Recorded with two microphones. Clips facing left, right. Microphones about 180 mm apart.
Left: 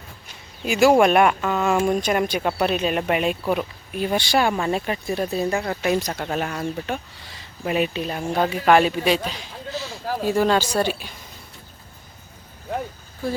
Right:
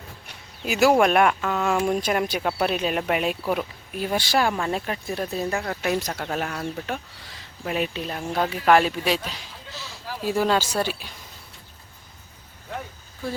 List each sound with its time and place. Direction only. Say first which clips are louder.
0.6 s speech: left 3 dB; centre (ahead or behind)
9.7 s a sound: left 9 dB; 50° left (ahead or behind)
10.3 s speech: left 2 dB; 5° right (ahead or behind)